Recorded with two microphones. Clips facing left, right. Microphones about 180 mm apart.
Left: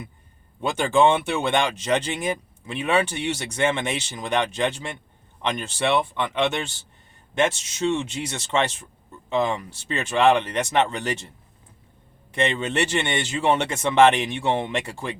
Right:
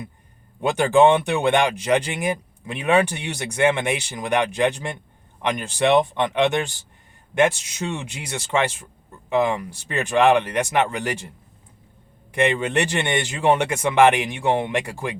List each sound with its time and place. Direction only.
0.9 s speech: 15° right (ahead or behind)
12.3 s speech: 15° right (ahead or behind)